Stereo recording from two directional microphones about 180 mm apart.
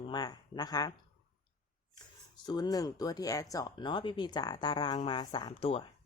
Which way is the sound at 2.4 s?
25° left (ahead or behind).